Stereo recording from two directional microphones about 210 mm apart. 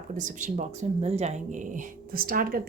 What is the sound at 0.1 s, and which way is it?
Speech, 40° right (ahead or behind).